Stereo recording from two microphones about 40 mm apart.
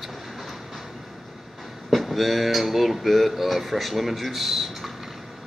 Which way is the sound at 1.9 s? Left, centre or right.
Centre.